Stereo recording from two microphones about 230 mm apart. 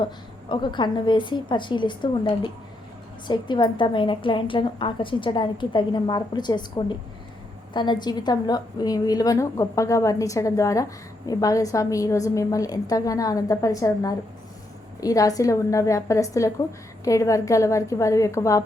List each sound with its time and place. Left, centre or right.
0.0 s a woman's voice: left